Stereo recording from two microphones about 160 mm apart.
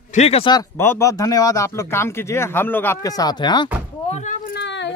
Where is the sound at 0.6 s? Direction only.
15° left (ahead or behind).